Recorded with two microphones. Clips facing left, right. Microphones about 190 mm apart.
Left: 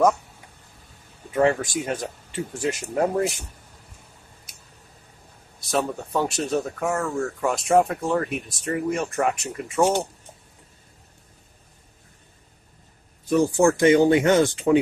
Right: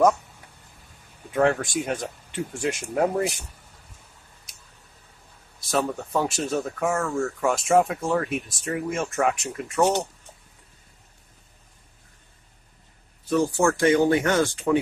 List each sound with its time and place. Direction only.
1.3 s speech: centre (ahead or behind)
5.6 s speech: centre (ahead or behind)
13.3 s speech: 15° left (ahead or behind)